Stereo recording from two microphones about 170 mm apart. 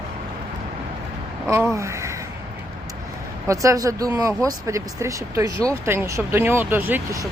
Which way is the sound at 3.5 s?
20° right (ahead or behind).